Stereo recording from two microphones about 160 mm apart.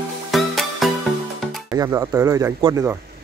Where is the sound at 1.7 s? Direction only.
20° right (ahead or behind).